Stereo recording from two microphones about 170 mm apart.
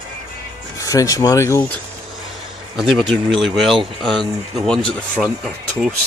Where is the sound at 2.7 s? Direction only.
Centre (ahead or behind).